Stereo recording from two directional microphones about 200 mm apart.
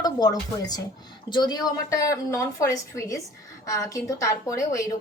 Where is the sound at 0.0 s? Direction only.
20° left (ahead or behind).